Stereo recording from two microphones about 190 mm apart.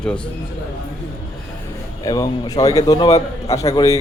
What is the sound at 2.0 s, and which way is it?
A man's voice, 20° left (ahead or behind).